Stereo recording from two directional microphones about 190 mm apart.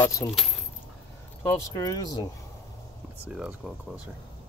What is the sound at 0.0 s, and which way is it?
Speech, 10° left (ahead or behind).